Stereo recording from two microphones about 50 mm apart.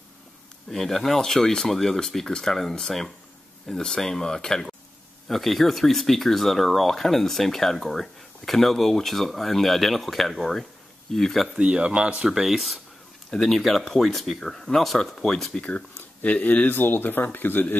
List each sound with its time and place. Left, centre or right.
0.7 s speech: centre
11.5 s speech: centre
12.3 s speech: centre
15.6 s speech: left
16.7 s speech: left